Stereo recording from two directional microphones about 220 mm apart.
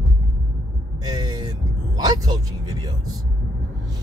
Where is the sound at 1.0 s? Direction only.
20° right (ahead or behind).